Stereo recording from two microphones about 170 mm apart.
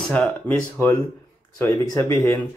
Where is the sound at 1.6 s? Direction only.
15° left (ahead or behind).